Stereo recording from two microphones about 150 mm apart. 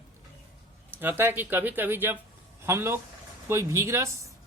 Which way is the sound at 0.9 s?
15° right (ahead or behind).